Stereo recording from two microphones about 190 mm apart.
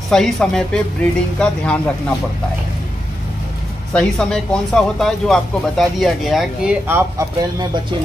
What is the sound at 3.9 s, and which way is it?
Speech, 5° left (ahead or behind).